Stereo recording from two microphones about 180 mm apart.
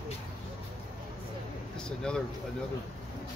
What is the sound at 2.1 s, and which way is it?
Speech, 5° left (ahead or behind).